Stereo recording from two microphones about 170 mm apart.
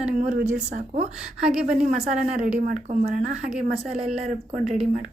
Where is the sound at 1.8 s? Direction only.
50° right (ahead or behind).